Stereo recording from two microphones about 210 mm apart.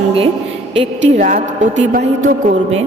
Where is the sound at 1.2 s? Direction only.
40° right (ahead or behind).